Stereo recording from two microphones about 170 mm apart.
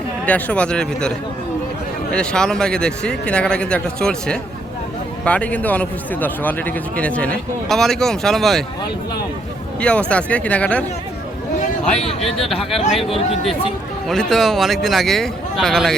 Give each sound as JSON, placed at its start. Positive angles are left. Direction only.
{"t": 0.3, "sound": "speech", "side_deg": 10}
{"t": 2.1, "sound": "speech", "side_deg": 5}
{"t": 9.8, "sound": "speech", "side_deg": 5}
{"t": 12.9, "sound": "speech", "side_deg": 0}
{"t": 13.1, "sound": "speech", "side_deg": 35}
{"t": 14.1, "sound": "speech", "side_deg": 0}